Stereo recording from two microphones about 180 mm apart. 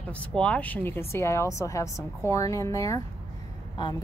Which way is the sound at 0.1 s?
5° left (ahead or behind).